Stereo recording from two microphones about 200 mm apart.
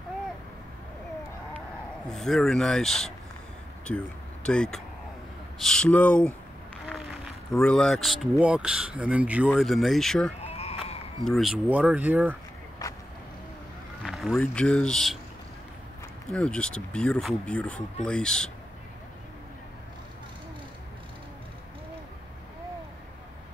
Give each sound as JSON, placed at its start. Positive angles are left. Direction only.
{"t": 2.0, "sound": "speech", "side_deg": 0}
{"t": 10.4, "sound": "sheep", "side_deg": 30}
{"t": 11.2, "sound": "speech", "side_deg": 0}
{"t": 12.8, "sound": "vehicle", "side_deg": 15}
{"t": 14.0, "sound": "speech", "side_deg": 0}
{"t": 16.3, "sound": "speech", "side_deg": 5}